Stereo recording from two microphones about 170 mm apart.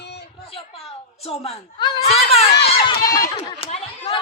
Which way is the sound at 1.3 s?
35° left (ahead or behind).